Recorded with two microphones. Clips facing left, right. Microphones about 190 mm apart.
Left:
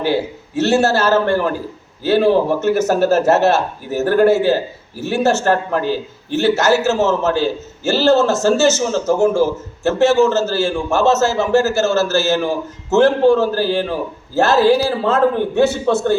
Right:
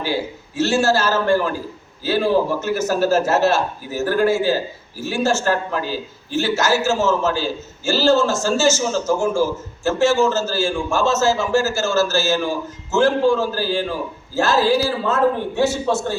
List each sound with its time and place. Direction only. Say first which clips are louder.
0.0 s a man's voice: left 5 dB; 60° left (ahead or behind)